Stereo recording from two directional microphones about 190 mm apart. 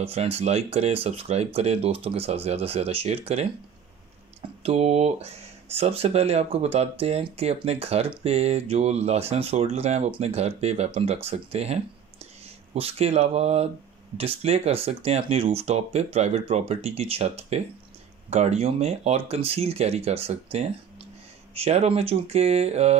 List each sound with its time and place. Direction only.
0.0 s speech: 30° right (ahead or behind)
4.6 s speech: 35° right (ahead or behind)